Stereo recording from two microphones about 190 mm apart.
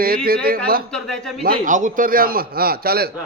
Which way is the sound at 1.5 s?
40° right (ahead or behind).